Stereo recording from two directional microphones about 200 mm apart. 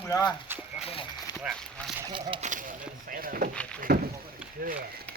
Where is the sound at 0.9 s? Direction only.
25° left (ahead or behind).